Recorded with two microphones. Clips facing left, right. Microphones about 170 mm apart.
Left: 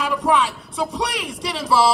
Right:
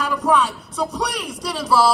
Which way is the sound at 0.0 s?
Centre (ahead or behind).